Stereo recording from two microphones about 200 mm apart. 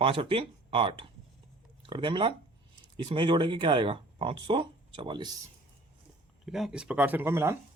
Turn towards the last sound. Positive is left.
turn(degrees=-10)  # may be behind; listen again after turning